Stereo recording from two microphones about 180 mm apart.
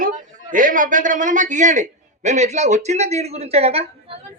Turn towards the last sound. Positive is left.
turn(degrees=-35)  # may be behind; listen again after turning